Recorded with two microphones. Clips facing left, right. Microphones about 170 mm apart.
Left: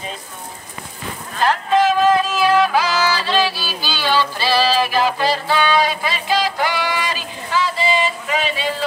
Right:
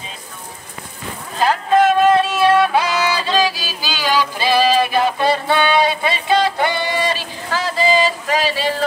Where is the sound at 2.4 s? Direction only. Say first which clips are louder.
Right 2 dB; 30° right (ahead or behind).